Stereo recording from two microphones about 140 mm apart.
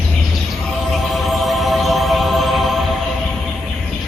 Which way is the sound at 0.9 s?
Centre (ahead or behind).